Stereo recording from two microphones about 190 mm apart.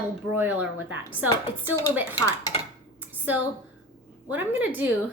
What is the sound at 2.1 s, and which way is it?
Speech, 20° left (ahead or behind).